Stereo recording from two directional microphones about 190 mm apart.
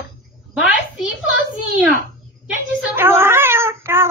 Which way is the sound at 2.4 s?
10° right (ahead or behind).